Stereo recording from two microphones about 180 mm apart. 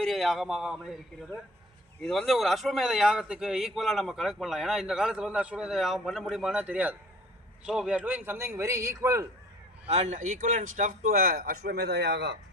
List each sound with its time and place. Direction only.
0.0 s speech: centre (ahead or behind)
2.0 s a man's voice: centre (ahead or behind); by 9.2 s 15° right (ahead or behind)
9.9 s speech: 40° right (ahead or behind); by 12.4 s 70° right (ahead or behind)